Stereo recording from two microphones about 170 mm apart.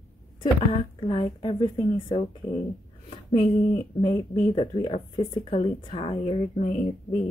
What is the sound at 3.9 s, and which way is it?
Speech, 30° left (ahead or behind).